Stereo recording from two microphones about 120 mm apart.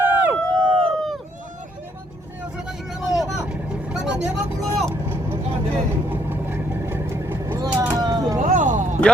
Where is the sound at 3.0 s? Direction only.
Centre (ahead or behind).